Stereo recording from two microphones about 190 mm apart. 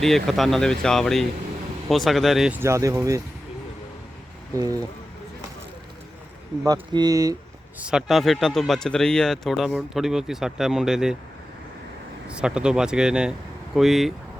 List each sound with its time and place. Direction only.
0.0 s speech: centre (ahead or behind); by 3.2 s 15° right (ahead or behind)
4.5 s speech: 20° right (ahead or behind)
6.7 s speech: 20° right (ahead or behind)
7.8 s speech: 5° right (ahead or behind)
12.3 s speech: 5° right (ahead or behind)